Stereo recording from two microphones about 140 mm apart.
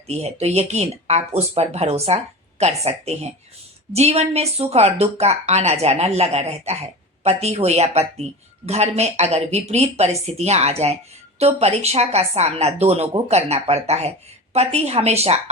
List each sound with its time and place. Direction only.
0.1 s speech: 50° right (ahead or behind)